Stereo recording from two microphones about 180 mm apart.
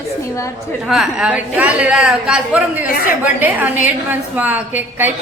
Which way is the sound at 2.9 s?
55° left (ahead or behind).